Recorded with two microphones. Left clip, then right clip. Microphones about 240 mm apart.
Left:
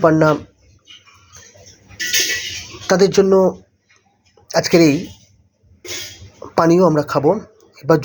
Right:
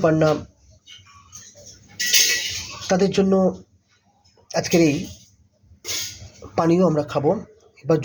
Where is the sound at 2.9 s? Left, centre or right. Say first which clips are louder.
Left 7 dB; centre.